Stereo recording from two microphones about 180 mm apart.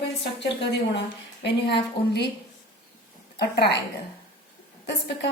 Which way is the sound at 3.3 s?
65° left (ahead or behind).